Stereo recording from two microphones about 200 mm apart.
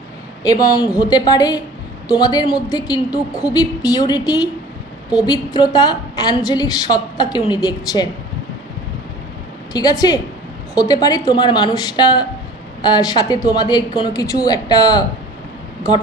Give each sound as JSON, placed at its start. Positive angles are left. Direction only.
{"t": 0.4, "sound": "a woman's voice", "side_deg": 20}
{"t": 5.2, "sound": "a woman's voice", "side_deg": 20}
{"t": 9.7, "sound": "a woman's voice", "side_deg": 20}